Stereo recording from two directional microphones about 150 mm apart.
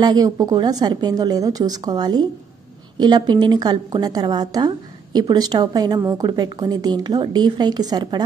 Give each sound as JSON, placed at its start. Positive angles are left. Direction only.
{"t": 0.0, "sound": "a woman's voice", "side_deg": -25}